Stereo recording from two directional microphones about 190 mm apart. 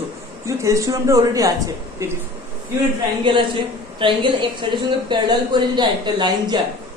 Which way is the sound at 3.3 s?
25° right (ahead or behind).